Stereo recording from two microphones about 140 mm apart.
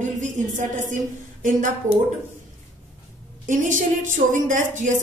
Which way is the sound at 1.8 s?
60° right (ahead or behind).